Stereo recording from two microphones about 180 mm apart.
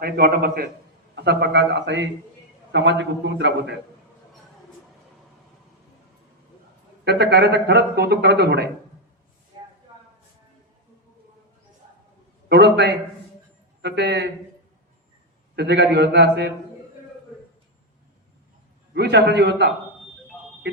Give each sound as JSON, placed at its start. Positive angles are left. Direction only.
{"t": 0.0, "sound": "a man's voice", "side_deg": -60}
{"t": 7.0, "sound": "speech", "side_deg": -65}
{"t": 12.5, "sound": "a man's voice", "side_deg": -70}
{"t": 15.5, "sound": "a man's voice", "side_deg": -70}
{"t": 18.9, "sound": "a man's voice", "side_deg": -65}